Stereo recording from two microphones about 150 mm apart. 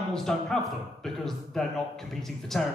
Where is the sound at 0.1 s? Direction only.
5° left (ahead or behind).